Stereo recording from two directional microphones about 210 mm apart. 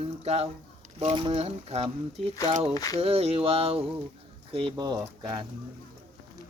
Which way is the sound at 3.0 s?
30° right (ahead or behind).